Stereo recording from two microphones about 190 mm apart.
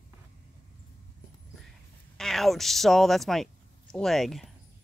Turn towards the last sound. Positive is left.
turn(degrees=0)  # may be behind; listen again after turning